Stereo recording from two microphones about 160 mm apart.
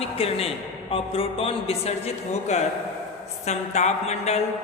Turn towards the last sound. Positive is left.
turn(degrees=45)  # may be behind; listen again after turning